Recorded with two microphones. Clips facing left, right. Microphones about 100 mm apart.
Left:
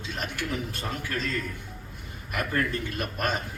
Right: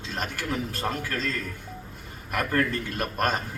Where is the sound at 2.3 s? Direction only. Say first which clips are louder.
Right 3 dB; 50° right (ahead or behind).